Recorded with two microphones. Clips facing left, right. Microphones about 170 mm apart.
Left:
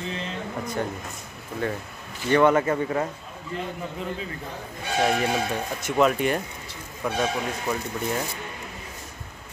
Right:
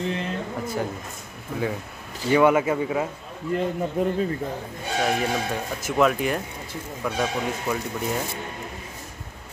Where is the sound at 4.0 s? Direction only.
50° right (ahead or behind).